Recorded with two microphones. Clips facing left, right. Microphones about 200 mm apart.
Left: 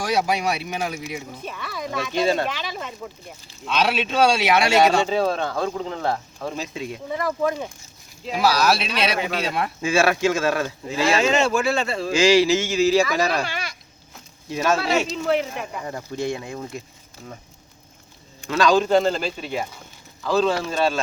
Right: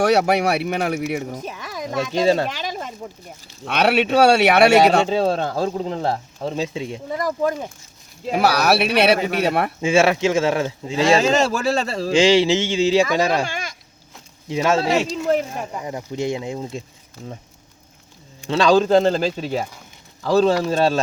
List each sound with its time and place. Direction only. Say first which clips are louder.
0.0 s speech: right 6 dB; 65° right (ahead or behind)
1.4 s a sound: right 2 dB; 40° right (ahead or behind)
1.9 s speech: right 4 dB; 40° right (ahead or behind)
3.7 s speech: right 5 dB; 65° right (ahead or behind)
5.1 s speech: right 2 dB; 30° right (ahead or behind)
7.2 s speech: right 2 dB; 40° right (ahead or behind)
8.3 s speech: right 2 dB; 65° right (ahead or behind)
9.8 s speech: right 2 dB; 25° right (ahead or behind)
13.4 s goat: right 3 dB; 45° right (ahead or behind)
14.5 s speech: right 3 dB; 20° right (ahead or behind)
14.9 s speech: right 2 dB; 40° right (ahead or behind)
15.8 s speech: right 2 dB; 15° right (ahead or behind)
18.4 s speech: right 3 dB; 30° right (ahead or behind)